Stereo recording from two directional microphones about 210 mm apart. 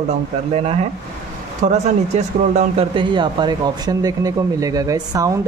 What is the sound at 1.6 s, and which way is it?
Speech, 30° right (ahead or behind).